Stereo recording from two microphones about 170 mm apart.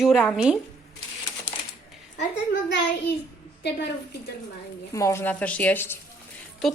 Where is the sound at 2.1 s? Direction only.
90° left.